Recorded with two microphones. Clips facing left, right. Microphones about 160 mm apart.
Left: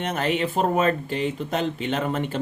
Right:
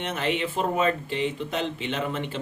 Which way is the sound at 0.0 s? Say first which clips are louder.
Left 3 dB; 40° left (ahead or behind).